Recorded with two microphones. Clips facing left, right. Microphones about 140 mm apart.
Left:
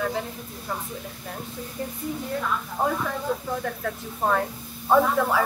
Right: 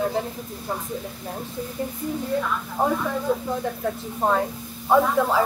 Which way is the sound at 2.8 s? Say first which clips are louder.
Right 4 dB; 15° right (ahead or behind).